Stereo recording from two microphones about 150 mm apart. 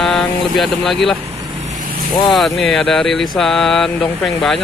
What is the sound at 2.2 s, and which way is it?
Speech, centre (ahead or behind).